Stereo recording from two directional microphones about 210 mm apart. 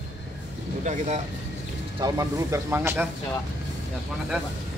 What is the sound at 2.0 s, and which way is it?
Speech, 15° right (ahead or behind).